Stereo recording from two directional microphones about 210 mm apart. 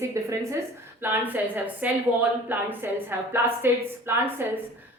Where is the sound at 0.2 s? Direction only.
15° right (ahead or behind).